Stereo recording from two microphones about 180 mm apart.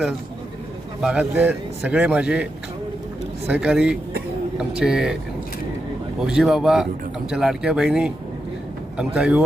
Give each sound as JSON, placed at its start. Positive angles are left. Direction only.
{"t": 1.0, "sound": "a man's voice", "side_deg": -10}
{"t": 6.1, "sound": "speech", "side_deg": -5}